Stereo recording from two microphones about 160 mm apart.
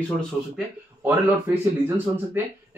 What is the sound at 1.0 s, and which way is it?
Speech, 15° right (ahead or behind).